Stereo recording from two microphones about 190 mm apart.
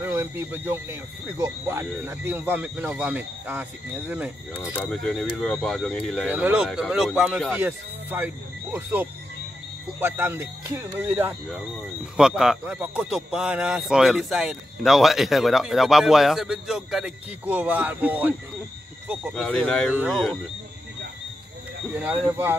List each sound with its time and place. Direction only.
0.0 s speech: 10° right (ahead or behind)
4.7 s speech: 5° left (ahead or behind)
6.3 s speech: 5° right (ahead or behind)
19.4 s speech: 5° left (ahead or behind)